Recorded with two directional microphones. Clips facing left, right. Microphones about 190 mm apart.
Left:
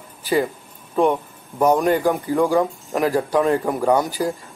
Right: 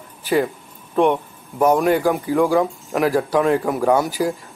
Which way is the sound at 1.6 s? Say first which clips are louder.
Right 1 dB; 10° right (ahead or behind).